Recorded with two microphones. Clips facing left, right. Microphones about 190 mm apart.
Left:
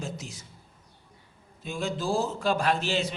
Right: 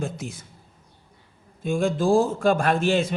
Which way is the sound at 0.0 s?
55° right (ahead or behind).